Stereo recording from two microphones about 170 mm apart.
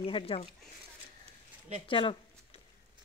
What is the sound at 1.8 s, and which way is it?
Speech, 30° left (ahead or behind).